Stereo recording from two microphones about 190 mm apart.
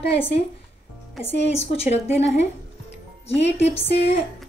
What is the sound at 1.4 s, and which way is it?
Speech, 30° left (ahead or behind).